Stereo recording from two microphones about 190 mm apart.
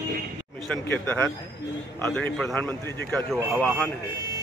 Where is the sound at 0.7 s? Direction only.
10° left (ahead or behind).